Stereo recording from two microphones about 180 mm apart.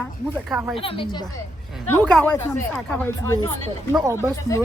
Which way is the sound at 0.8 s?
30° left (ahead or behind).